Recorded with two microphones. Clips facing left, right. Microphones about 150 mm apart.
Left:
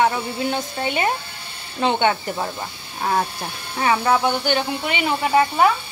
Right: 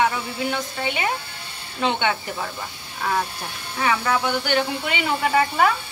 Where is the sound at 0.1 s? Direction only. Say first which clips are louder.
Left 3 dB; 35° left (ahead or behind).